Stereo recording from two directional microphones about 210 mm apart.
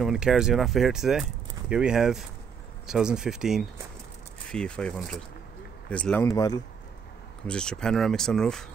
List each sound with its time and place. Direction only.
0.0 s speech: centre (ahead or behind)
6.2 s speech: 15° left (ahead or behind)
7.4 s speech: 5° left (ahead or behind)